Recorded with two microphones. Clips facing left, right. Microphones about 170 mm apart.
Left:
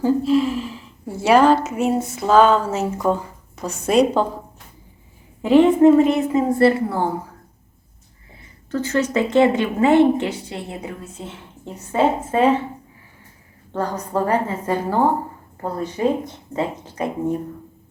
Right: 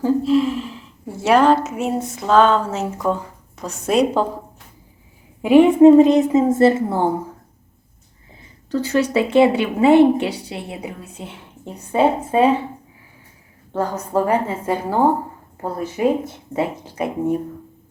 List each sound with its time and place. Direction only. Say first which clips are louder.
0.0 s a woman's voice: right 1 dB; centre (ahead or behind)
5.4 s a woman's voice: right 2 dB; 10° right (ahead or behind)
8.7 s a woman's voice: right 2 dB; 15° right (ahead or behind)
13.7 s a woman's voice: right 2 dB; 10° right (ahead or behind)